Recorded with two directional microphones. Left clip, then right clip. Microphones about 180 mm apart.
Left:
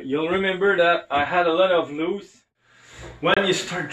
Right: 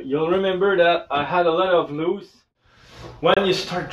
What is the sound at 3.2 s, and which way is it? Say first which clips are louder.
Speech: right 2 dB; 25° right (ahead or behind).